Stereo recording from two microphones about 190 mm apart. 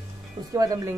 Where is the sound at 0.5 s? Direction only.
20° right (ahead or behind).